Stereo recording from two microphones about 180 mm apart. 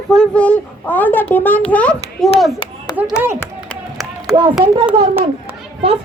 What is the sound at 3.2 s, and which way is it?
Speech, 10° right (ahead or behind).